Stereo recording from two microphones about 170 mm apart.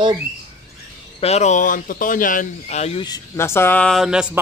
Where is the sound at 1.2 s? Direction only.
40° left (ahead or behind).